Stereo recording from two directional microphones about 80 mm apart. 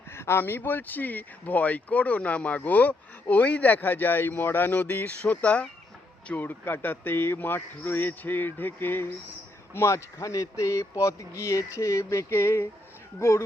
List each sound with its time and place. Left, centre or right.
0.1 s speech: left